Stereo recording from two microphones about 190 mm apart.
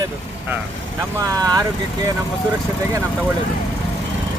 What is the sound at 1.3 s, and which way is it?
Speech, 20° right (ahead or behind).